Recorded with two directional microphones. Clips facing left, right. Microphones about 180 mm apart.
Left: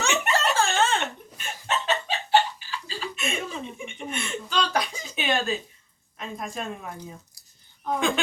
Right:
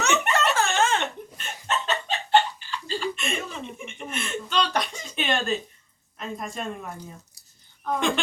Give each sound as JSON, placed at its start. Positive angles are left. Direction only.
{"t": 0.0, "sound": "giggle", "side_deg": 30}
{"t": 0.5, "sound": "a sound", "side_deg": 30}
{"t": 1.4, "sound": "chicken", "side_deg": 10}
{"t": 2.8, "sound": "chuckle", "side_deg": 0}
{"t": 6.1, "sound": "a woman's voice", "side_deg": 0}
{"t": 7.9, "sound": "a woman's voice", "side_deg": 0}